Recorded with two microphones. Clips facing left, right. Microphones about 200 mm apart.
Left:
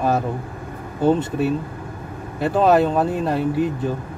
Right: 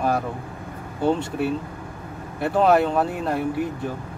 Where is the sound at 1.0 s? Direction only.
20° left (ahead or behind).